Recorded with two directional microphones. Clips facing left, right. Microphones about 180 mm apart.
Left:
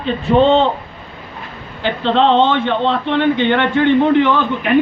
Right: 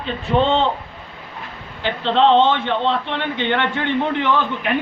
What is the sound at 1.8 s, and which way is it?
A man's voice, 55° left (ahead or behind).